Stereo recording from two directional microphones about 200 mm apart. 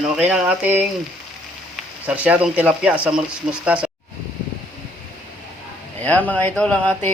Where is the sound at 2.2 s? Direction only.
5° right (ahead or behind).